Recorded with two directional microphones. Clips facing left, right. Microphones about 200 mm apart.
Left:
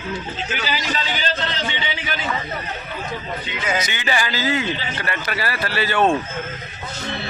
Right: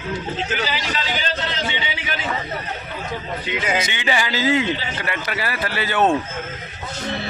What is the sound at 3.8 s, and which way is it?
A man's voice, 25° right (ahead or behind).